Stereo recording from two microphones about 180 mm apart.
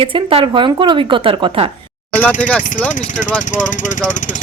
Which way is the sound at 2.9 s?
45° left (ahead or behind).